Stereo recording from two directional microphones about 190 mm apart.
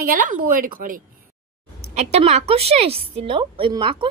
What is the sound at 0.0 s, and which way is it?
Speech, 45° right (ahead or behind).